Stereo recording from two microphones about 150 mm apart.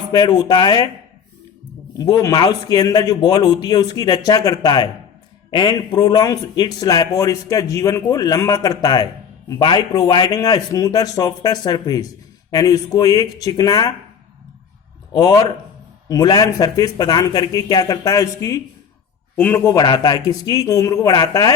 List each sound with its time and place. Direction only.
0.1 s a man's voice: 30° left (ahead or behind)
1.9 s a man's voice: 25° left (ahead or behind)
15.1 s a man's voice: 25° left (ahead or behind)